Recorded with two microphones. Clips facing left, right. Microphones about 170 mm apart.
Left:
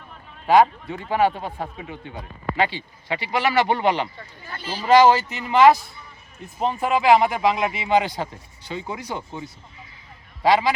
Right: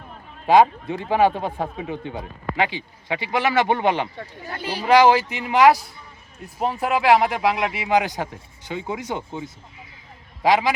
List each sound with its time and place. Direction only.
0.4 s speech: 20° right (ahead or behind)